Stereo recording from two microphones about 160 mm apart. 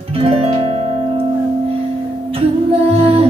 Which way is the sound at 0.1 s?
35° right (ahead or behind).